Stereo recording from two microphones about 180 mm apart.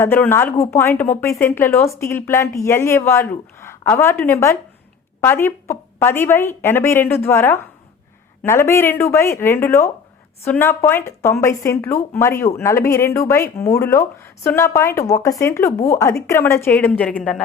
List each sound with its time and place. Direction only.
0.0 s speech: 15° left (ahead or behind)